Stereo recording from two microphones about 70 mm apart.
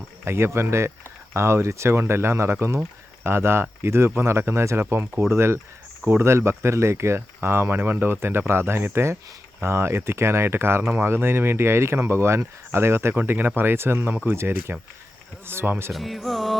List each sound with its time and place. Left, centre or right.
0.3 s speech: right
15.9 s music: centre